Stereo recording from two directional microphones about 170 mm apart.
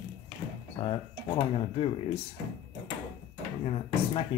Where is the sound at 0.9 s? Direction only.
30° left (ahead or behind).